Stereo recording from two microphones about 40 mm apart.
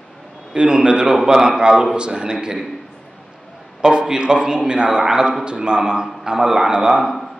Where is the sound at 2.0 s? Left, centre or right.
Right.